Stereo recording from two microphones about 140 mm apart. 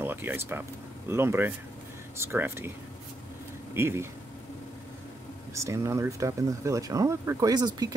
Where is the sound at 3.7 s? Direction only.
20° right (ahead or behind).